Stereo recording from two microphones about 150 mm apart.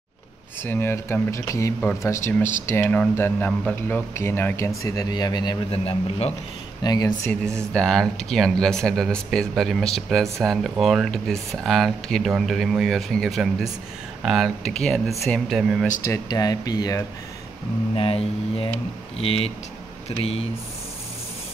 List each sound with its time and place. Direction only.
0.7 s speech: 15° left (ahead or behind); by 6.3 s 40° left (ahead or behind)
6.8 s speech: 25° left (ahead or behind)
7.7 s speech: 5° left (ahead or behind)
16.1 s speech: 25° left (ahead or behind)
17.9 s speech: 40° left (ahead or behind)